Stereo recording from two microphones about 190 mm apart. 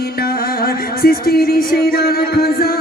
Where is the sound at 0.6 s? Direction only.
55° left (ahead or behind).